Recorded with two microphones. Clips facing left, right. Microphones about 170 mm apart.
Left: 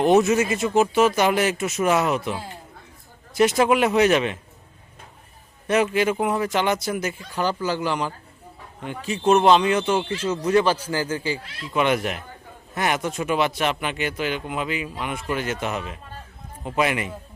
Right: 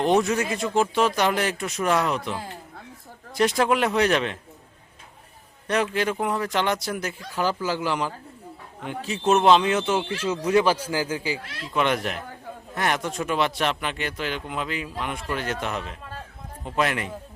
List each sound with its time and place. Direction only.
0.0 s speech: 5° left (ahead or behind)
5.6 s a man's voice: 5° left (ahead or behind)
11.7 s a man's voice: 5° left (ahead or behind)